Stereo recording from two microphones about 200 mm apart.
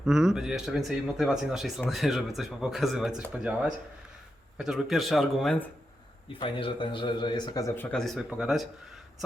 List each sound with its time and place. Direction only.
0.0 s speech: centre (ahead or behind)
4.5 s speech: centre (ahead or behind)
6.4 s a man's voice: 25° left (ahead or behind); by 8.6 s 5° right (ahead or behind)